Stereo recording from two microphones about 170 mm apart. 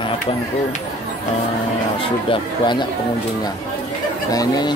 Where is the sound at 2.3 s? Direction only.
25° left (ahead or behind).